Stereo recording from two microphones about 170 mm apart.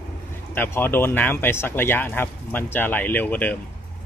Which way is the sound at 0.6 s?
10° left (ahead or behind).